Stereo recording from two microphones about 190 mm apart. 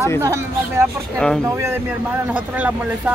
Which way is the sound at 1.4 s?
15° right (ahead or behind).